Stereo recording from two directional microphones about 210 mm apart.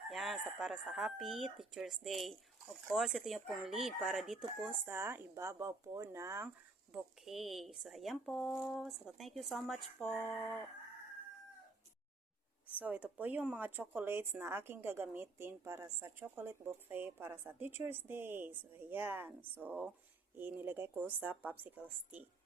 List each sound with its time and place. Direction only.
0.1 s speech: centre (ahead or behind)
6.9 s speech: centre (ahead or behind)
12.6 s speech: 10° right (ahead or behind)